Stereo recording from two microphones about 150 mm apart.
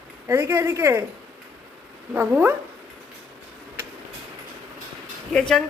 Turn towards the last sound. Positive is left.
turn(degrees=5)  # may be behind; listen again after turning